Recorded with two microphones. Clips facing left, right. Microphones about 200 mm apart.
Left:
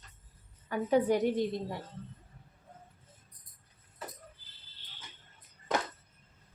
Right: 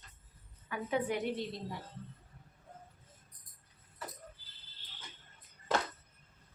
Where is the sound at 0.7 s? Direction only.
40° left (ahead or behind).